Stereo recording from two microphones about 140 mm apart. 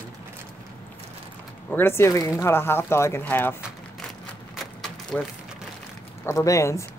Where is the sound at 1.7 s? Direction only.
15° left (ahead or behind).